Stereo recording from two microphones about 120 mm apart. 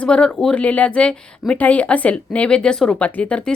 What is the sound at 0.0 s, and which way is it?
Speech, 10° left (ahead or behind).